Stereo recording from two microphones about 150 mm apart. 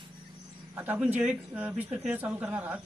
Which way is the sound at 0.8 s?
10° right (ahead or behind).